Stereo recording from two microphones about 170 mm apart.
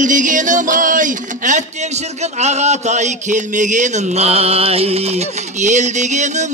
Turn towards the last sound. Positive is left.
turn(degrees=-45)  # may be behind; listen again after turning